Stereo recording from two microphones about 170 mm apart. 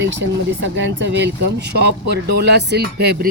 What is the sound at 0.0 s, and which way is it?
A man's voice, 90° right.